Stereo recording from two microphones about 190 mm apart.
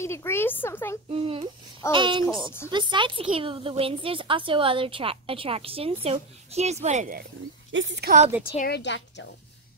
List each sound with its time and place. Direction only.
0.0 s speech: 15° left (ahead or behind)
1.1 s a woman's voice: 30° right (ahead or behind)
2.2 s speech: 15° left (ahead or behind)
2.7 s a woman's voice: 25° right (ahead or behind)
7.7 s a woman's voice: 70° right (ahead or behind)
8.5 s a woman's voice: 60° left (ahead or behind)